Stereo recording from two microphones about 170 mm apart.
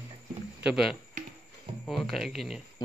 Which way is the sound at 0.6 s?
5° right (ahead or behind).